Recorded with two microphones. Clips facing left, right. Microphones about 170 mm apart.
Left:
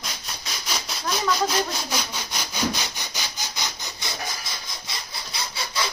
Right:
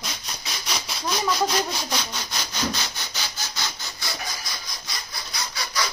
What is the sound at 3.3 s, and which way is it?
Sawing, 15° left (ahead or behind).